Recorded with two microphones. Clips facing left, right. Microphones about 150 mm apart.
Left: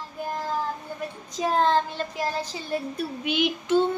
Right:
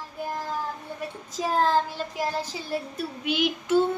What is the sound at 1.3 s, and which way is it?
A child's voice, 5° right (ahead or behind).